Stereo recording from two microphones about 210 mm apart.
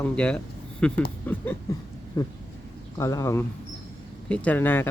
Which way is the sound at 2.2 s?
20° left (ahead or behind).